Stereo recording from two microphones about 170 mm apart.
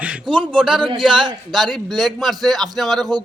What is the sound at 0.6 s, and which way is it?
Speech, 5° right (ahead or behind).